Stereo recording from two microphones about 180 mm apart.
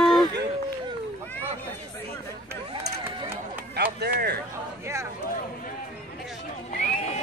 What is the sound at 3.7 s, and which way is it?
Speech, 65° right (ahead or behind).